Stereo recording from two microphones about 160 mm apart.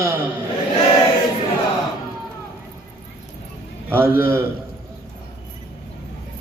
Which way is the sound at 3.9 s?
15° right (ahead or behind).